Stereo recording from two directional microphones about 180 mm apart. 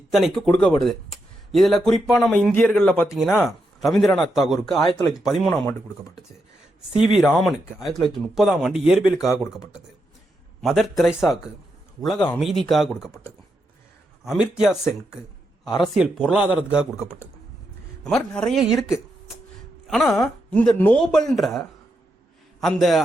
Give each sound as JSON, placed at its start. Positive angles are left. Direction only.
{"t": 0.1, "sound": "speech", "side_deg": 0}
{"t": 4.9, "sound": "speech", "side_deg": 20}
{"t": 5.1, "sound": "speech", "side_deg": 0}
{"t": 6.9, "sound": "speech", "side_deg": 0}
{"t": 10.6, "sound": "speech", "side_deg": 0}
{"t": 15.6, "sound": "speech", "side_deg": 20}
{"t": 16.0, "sound": "speech", "side_deg": -5}
{"t": 18.0, "sound": "speech", "side_deg": 5}
{"t": 22.6, "sound": "speech", "side_deg": 0}